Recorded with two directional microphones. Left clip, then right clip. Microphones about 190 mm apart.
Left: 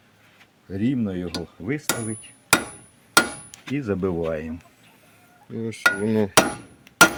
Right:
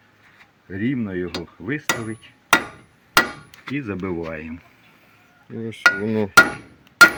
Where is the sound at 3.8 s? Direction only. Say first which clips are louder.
Left 3 dB; 50° left (ahead or behind).